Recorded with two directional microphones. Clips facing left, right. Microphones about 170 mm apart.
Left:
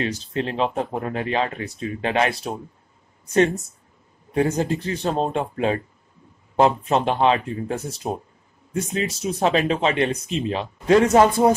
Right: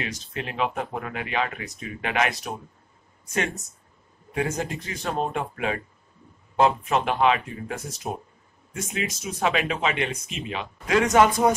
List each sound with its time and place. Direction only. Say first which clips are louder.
0.0 s speech: left 7 dB; 30° left (ahead or behind)